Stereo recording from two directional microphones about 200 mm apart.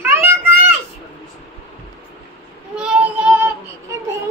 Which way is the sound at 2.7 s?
5° right (ahead or behind).